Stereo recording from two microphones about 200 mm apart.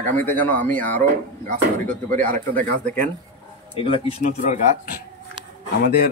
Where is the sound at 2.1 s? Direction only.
40° right (ahead or behind).